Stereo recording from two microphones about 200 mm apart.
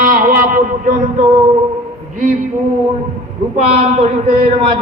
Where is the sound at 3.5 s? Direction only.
35° right (ahead or behind).